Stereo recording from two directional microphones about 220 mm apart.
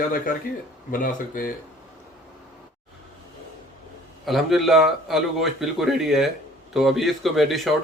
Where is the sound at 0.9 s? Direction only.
35° left (ahead or behind).